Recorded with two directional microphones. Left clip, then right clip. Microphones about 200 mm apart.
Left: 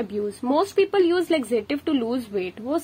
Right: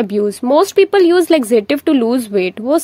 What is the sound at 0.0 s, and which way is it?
Speech, 40° right (ahead or behind).